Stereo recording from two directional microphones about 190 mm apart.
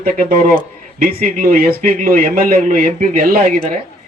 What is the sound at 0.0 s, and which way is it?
A man's voice, 45° right (ahead or behind).